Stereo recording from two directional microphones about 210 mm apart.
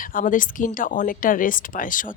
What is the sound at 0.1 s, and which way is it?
Speech, 40° left (ahead or behind).